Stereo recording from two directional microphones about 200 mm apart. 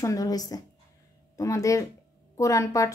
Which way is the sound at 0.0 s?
15° left (ahead or behind).